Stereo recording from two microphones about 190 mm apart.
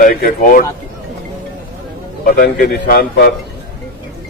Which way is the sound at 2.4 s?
50° left (ahead or behind).